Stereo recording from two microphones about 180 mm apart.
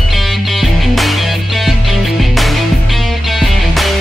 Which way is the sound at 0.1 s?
Centre (ahead or behind).